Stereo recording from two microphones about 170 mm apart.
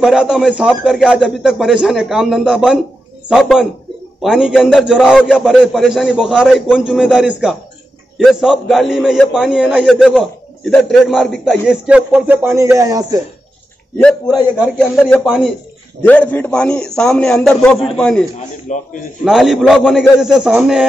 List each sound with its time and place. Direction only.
0.0 s a man's voice: 5° right (ahead or behind); by 13.2 s 20° right (ahead or behind)
13.9 s a man's voice: 5° left (ahead or behind)
15.2 s a man's voice: 5° right (ahead or behind)
16.0 s a man's voice: 10° left (ahead or behind)
18.7 s a man's voice: 45° left (ahead or behind)
19.2 s a man's voice: centre (ahead or behind)